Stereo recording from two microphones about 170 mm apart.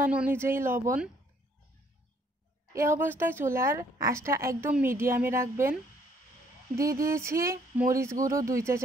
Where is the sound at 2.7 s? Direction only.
15° right (ahead or behind).